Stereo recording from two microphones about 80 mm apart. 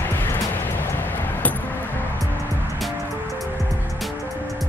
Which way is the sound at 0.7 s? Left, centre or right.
Left.